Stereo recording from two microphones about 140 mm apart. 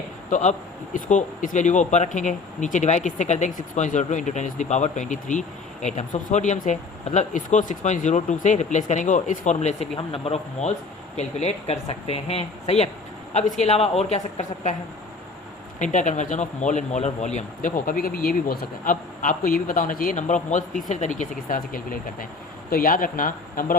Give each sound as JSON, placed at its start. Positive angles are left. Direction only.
{"t": 0.3, "sound": "a man's voice", "side_deg": 60}
{"t": 15.8, "sound": "speech", "side_deg": 60}